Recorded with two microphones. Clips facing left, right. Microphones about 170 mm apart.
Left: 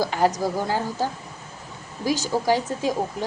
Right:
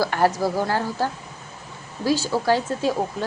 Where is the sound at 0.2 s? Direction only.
15° left (ahead or behind).